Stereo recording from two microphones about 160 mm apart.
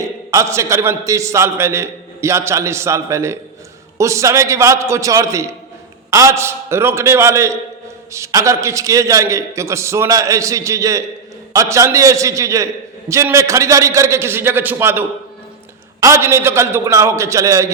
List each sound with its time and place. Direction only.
0.0 s a man's voice: 20° right (ahead or behind)